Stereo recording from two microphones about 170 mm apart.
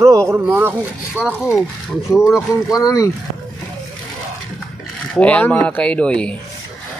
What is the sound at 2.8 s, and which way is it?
Speech, 20° left (ahead or behind).